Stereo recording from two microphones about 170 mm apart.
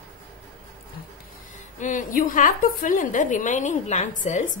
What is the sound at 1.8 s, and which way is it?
A woman's voice, 50° left (ahead or behind).